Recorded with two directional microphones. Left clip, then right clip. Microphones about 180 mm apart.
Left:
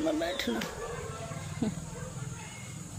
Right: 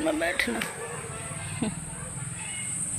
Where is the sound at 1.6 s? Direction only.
10° left (ahead or behind).